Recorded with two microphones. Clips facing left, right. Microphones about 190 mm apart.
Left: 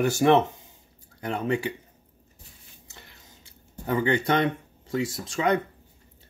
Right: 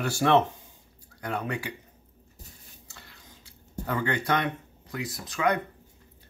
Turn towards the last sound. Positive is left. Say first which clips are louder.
# left 2 dB
turn(degrees=25)  # may be behind; listen again after turning